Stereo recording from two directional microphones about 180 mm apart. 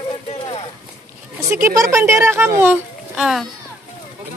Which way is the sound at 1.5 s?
15° right (ahead or behind).